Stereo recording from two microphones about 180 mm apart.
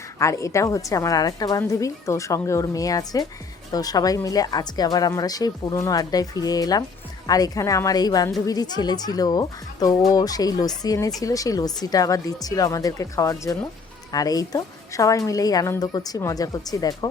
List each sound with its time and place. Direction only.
0.2 s a woman's voice: 15° left (ahead or behind)